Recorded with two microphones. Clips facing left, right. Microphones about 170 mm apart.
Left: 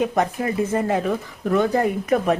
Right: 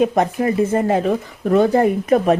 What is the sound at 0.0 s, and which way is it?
Speech, 25° right (ahead or behind).